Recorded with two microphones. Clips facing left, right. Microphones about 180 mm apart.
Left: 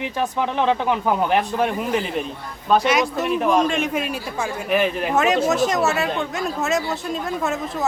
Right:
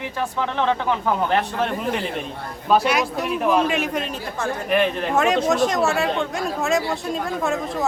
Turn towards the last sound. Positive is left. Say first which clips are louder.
# right 1 dB
turn(degrees=0)  # may be behind; listen again after turning